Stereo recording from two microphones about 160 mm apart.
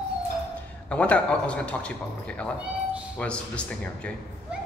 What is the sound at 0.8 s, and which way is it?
A man's voice, 10° left (ahead or behind).